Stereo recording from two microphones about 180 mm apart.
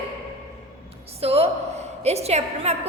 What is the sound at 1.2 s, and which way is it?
A woman's voice, 35° right (ahead or behind).